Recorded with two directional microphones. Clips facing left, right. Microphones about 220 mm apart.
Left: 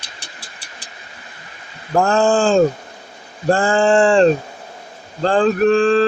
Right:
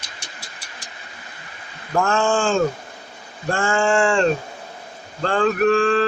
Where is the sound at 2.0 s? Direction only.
35° left (ahead or behind).